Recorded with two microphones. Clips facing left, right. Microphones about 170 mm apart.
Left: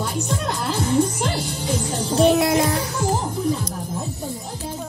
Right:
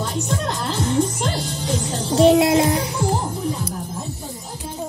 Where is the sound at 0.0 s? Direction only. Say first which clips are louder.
Right 1 dB; 10° left (ahead or behind).